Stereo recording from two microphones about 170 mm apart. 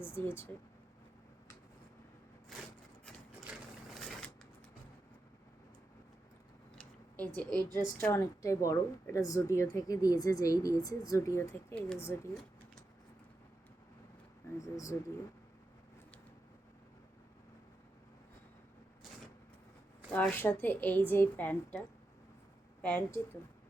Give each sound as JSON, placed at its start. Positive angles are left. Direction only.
{"t": 0.0, "sound": "a woman's voice", "side_deg": 15}
{"t": 3.9, "sound": "a sound", "side_deg": 5}
{"t": 7.3, "sound": "a woman's voice", "side_deg": 10}
{"t": 14.6, "sound": "speech", "side_deg": 20}
{"t": 20.1, "sound": "a woman's voice", "side_deg": 10}
{"t": 22.8, "sound": "a woman's voice", "side_deg": 10}